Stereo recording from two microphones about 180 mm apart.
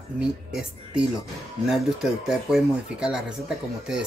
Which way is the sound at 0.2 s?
5° right (ahead or behind).